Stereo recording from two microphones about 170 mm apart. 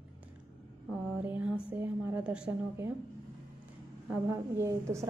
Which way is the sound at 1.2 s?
10° right (ahead or behind).